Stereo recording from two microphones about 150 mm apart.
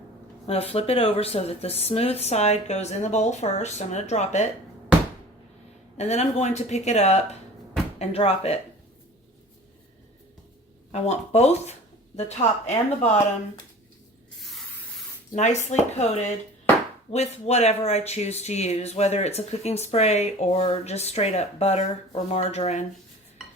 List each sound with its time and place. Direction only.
0.4 s speech: 40° left (ahead or behind)
6.0 s speech: 45° left (ahead or behind)
10.9 s speech: 45° left (ahead or behind)
15.3 s speech: 50° left (ahead or behind)